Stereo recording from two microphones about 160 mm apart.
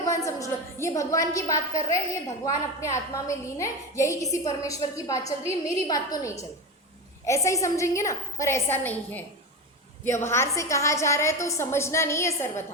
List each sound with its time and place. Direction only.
0.0 s a woman's voice: 20° left (ahead or behind)